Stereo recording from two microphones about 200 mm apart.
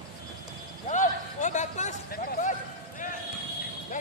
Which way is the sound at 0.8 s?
40° left (ahead or behind).